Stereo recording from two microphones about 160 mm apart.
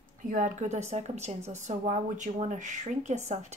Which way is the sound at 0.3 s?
50° right (ahead or behind).